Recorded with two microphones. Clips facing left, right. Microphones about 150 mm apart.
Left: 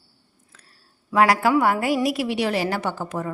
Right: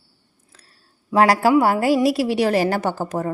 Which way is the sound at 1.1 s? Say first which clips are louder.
Right 3 dB; 35° right (ahead or behind).